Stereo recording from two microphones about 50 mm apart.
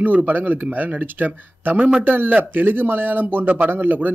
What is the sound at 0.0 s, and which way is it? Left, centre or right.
Speech, right.